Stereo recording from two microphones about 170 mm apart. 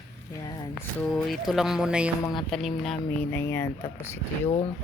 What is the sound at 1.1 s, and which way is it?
Speech, centre (ahead or behind).